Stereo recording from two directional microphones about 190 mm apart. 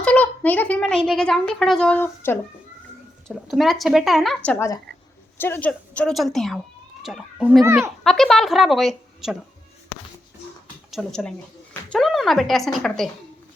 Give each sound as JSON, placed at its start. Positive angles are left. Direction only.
{"t": 0.0, "sound": "a child's voice", "side_deg": 5}
{"t": 3.2, "sound": "speech", "side_deg": 0}
{"t": 4.4, "sound": "a woman's voice", "side_deg": 15}
{"t": 9.9, "sound": "music", "side_deg": 90}
{"t": 10.9, "sound": "speech", "side_deg": 5}